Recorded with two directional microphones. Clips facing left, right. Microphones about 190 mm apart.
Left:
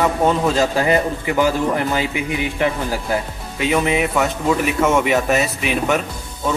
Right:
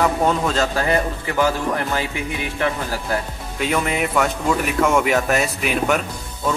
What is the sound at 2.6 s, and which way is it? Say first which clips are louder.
Speech: left 2 dB; 15° left (ahead or behind).